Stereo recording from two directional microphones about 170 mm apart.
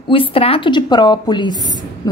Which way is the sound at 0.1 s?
30° left (ahead or behind).